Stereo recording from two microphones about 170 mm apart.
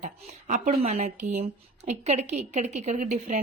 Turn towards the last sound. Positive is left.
turn(degrees=-45)  # may be behind; listen again after turning